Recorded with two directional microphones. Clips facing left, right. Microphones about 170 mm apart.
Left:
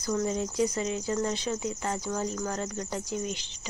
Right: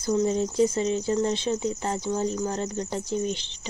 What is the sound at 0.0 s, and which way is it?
Speech, 25° right (ahead or behind).